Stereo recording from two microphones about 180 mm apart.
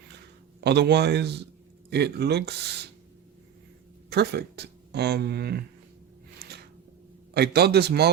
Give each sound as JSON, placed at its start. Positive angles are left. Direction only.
{"t": 0.6, "sound": "speech", "side_deg": -70}
{"t": 4.1, "sound": "speech", "side_deg": -65}
{"t": 7.3, "sound": "a man's voice", "side_deg": -60}